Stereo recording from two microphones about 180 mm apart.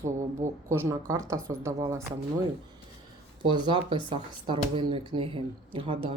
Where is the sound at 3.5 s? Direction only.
25° right (ahead or behind).